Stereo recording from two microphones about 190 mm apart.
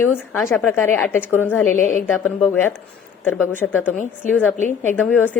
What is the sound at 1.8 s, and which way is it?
Speech, 45° left (ahead or behind).